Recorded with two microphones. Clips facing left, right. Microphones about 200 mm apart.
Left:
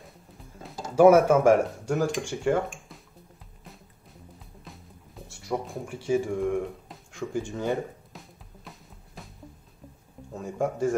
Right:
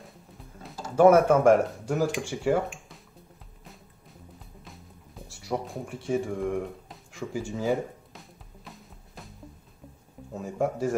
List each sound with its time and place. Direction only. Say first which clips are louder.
0.7 s a sound: left 2 dB; 15° left (ahead or behind)
1.0 s speech: left 1 dB; 5° left (ahead or behind)
4.6 s music: left 1 dB; centre (ahead or behind)
10.3 s speech: right 1 dB; centre (ahead or behind)